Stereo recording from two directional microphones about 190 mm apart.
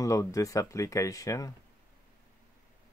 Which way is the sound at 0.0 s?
15° left (ahead or behind).